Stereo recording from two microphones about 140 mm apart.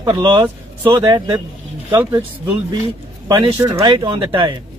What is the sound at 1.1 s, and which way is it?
Speech, 30° right (ahead or behind).